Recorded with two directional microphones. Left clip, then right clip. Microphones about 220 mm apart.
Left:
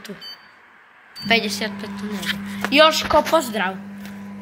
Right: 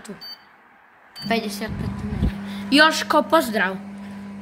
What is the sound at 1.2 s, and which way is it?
Speech, centre (ahead or behind).